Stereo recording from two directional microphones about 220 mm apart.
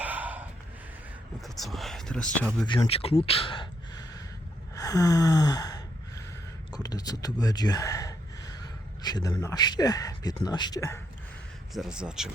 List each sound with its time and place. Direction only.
0.0 s gasp: 5° right (ahead or behind)
1.5 s speech: centre (ahead or behind)
2.6 s speech: 20° left (ahead or behind)
4.7 s gasp: 15° left (ahead or behind)
9.0 s a man's voice: 20° left (ahead or behind)
11.7 s speech: centre (ahead or behind)